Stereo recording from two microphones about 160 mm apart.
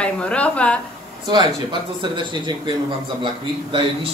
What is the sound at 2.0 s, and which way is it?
A man's voice, 30° right (ahead or behind).